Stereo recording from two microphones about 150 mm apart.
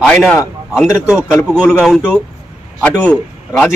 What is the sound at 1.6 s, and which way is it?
A man's voice, 5° left (ahead or behind).